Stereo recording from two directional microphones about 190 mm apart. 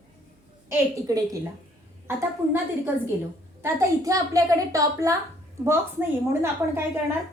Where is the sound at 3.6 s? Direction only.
15° right (ahead or behind).